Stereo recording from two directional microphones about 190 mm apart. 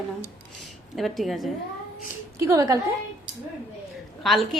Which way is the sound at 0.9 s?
Centre (ahead or behind).